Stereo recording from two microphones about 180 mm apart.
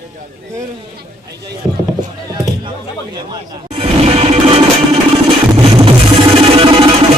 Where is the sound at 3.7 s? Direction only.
35° right (ahead or behind).